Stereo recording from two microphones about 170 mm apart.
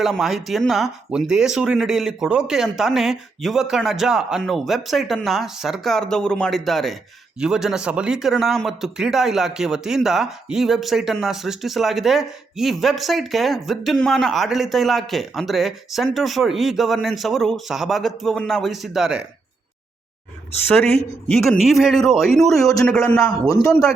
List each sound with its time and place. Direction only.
0.0 s speech: centre (ahead or behind)
21.5 s speech: centre (ahead or behind)
23.5 s speech: 20° left (ahead or behind)